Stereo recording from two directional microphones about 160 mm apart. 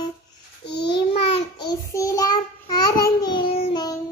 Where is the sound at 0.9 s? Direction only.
35° left (ahead or behind).